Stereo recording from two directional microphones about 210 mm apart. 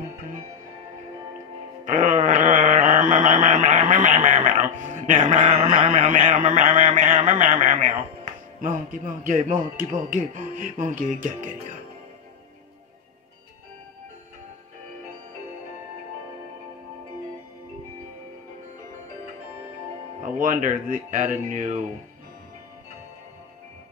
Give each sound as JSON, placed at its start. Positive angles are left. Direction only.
{"t": 1.9, "sound": "a sound", "side_deg": -35}
{"t": 5.7, "sound": "speech", "side_deg": -35}
{"t": 20.3, "sound": "speech", "side_deg": -40}